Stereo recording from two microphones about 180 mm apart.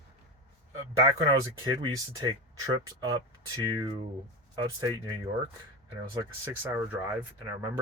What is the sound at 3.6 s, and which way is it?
Speech, 20° right (ahead or behind).